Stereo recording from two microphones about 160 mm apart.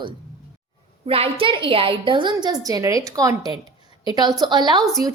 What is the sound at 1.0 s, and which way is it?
A woman's voice, 35° right (ahead or behind).